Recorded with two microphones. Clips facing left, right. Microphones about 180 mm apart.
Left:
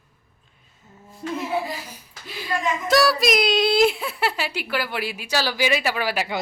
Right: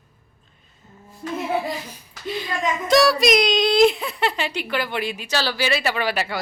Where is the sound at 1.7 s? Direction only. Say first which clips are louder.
Right 3 dB; 5° left (ahead or behind).